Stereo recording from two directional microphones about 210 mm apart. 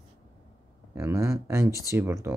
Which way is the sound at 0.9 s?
15° right (ahead or behind).